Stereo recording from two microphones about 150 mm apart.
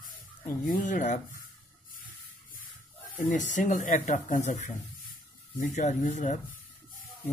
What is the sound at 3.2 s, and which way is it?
Speech, 55° left (ahead or behind).